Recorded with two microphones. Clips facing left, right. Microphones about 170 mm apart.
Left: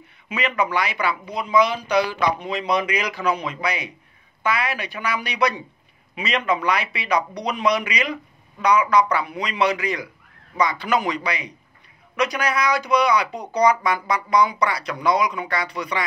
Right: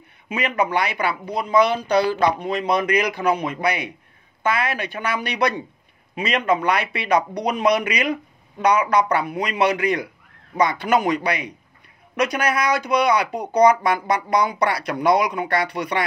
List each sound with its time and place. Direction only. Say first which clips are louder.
0.3 s speech: right 1 dB; 50° right (ahead or behind)